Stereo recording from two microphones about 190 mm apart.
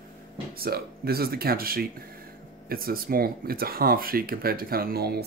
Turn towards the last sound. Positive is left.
turn(degrees=-55)  # may be behind; listen again after turning